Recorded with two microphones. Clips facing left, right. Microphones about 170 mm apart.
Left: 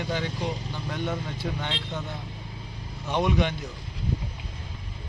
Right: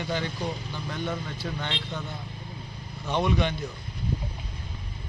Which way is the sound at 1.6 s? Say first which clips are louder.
Left 1 dB; 5° left (ahead or behind).